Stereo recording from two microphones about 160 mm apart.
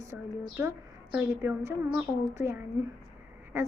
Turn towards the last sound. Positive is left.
turn(degrees=-15)  # may be behind; listen again after turning